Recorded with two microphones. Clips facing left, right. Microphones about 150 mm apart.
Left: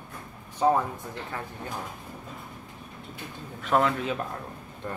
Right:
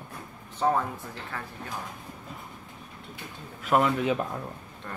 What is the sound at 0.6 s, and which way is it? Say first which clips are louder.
Speech: left 2 dB; 20° left (ahead or behind).